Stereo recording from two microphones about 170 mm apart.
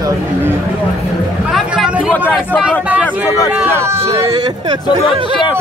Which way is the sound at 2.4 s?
5° right (ahead or behind).